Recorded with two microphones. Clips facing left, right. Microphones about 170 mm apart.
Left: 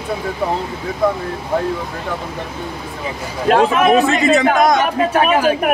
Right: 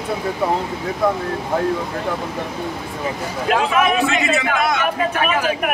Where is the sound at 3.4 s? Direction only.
40° left (ahead or behind).